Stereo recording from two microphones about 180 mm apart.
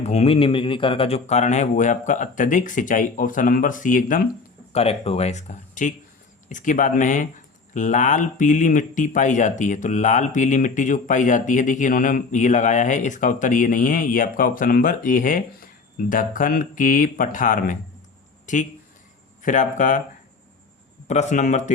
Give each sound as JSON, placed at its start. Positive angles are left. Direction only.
{"t": 0.0, "sound": "speech", "side_deg": 35}
{"t": 4.7, "sound": "speech", "side_deg": 35}
{"t": 21.1, "sound": "speech", "side_deg": 40}